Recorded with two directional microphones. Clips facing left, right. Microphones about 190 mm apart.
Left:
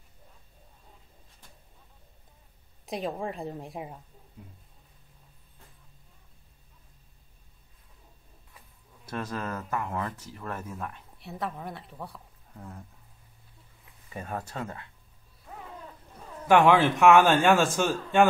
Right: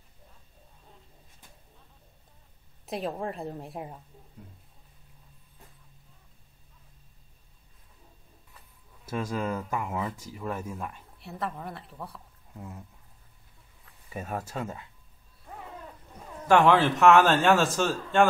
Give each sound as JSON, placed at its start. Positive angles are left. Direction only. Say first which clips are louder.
{"t": 2.8, "sound": "a woman's voice", "louder": "even", "side_deg": 0}
{"t": 9.0, "sound": "speech", "louder": "right 3 dB", "side_deg": -10}
{"t": 14.1, "sound": "speech", "louder": "right 1 dB", "side_deg": -10}
{"t": 16.4, "sound": "speech", "louder": "left 1 dB", "side_deg": 10}